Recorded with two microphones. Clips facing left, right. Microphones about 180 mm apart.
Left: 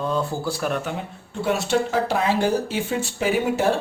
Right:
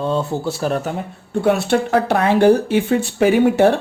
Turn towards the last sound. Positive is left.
turn(degrees=-65)  # may be behind; listen again after turning